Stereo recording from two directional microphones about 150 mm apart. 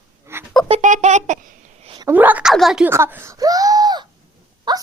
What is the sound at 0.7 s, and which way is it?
Speech, 50° right (ahead or behind).